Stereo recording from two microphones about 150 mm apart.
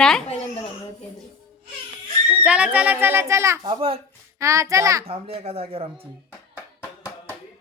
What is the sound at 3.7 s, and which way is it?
Speech, 40° right (ahead or behind).